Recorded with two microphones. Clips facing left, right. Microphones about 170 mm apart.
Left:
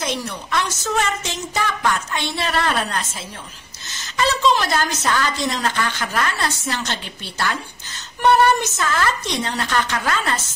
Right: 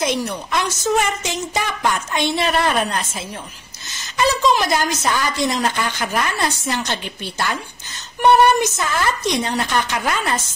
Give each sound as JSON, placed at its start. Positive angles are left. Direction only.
{"t": 0.0, "sound": "a woman's voice", "side_deg": -15}
{"t": 4.2, "sound": "a woman's voice", "side_deg": -15}